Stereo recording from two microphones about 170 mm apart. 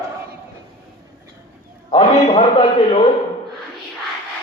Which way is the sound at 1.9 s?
30° left (ahead or behind).